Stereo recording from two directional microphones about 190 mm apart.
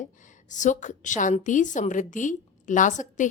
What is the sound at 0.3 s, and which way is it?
A woman's voice, 40° left (ahead or behind).